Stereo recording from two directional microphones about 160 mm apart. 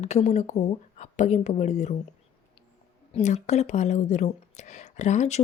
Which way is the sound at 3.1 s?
45° left (ahead or behind).